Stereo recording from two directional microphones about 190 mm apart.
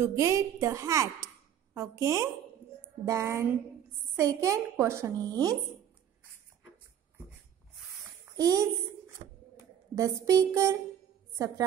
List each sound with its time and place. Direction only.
0.0 s a woman's voice: 15° right (ahead or behind)
8.4 s a child's voice: 20° right (ahead or behind)
9.2 s a sound: 30° right (ahead or behind)
9.9 s a woman's voice: 15° right (ahead or behind)